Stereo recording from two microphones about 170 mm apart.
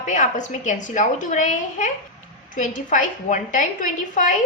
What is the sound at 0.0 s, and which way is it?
A woman's voice, 45° left (ahead or behind).